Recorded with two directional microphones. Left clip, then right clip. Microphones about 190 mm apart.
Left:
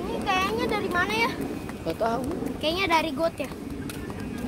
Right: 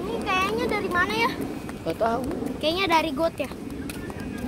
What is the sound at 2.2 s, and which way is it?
Speech, 20° right (ahead or behind).